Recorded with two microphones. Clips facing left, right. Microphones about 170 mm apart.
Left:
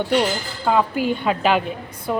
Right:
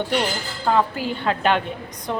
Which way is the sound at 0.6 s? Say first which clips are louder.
Left 1 dB; 10° left (ahead or behind).